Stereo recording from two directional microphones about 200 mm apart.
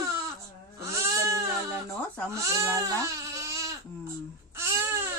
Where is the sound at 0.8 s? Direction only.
15° right (ahead or behind).